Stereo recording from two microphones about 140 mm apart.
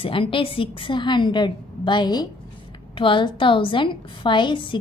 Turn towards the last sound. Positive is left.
turn(degrees=35)  # may be behind; listen again after turning